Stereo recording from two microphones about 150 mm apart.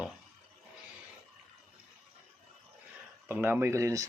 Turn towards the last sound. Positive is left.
turn(degrees=-20)  # may be behind; listen again after turning